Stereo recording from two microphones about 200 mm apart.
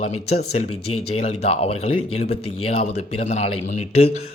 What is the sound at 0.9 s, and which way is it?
Speech, 90° left.